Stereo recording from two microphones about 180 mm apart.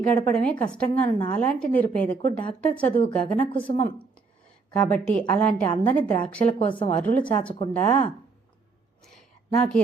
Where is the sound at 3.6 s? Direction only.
30° left (ahead or behind).